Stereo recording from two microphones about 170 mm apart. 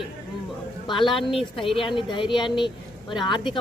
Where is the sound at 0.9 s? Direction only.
30° left (ahead or behind).